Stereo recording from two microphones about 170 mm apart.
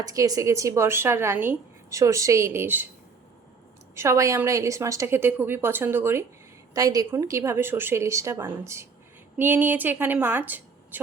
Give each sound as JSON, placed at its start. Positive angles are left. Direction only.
{"t": 0.0, "sound": "speech", "side_deg": -20}
{"t": 3.9, "sound": "speech", "side_deg": -15}